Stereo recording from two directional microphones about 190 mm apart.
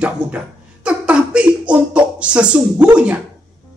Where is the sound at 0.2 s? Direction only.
5° right (ahead or behind).